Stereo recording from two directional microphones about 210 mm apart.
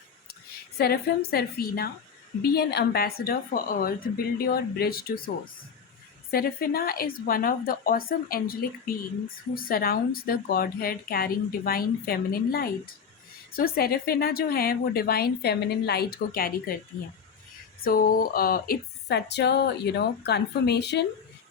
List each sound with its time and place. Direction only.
0.8 s a woman's voice: 50° left (ahead or behind)
6.3 s a woman's voice: 45° left (ahead or behind)
17.8 s a woman's voice: 40° left (ahead or behind)